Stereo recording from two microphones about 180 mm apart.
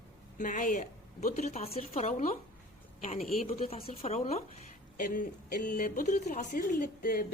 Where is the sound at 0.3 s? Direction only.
45° left (ahead or behind).